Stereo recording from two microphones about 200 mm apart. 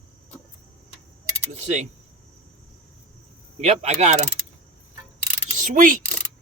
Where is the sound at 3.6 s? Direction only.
35° right (ahead or behind).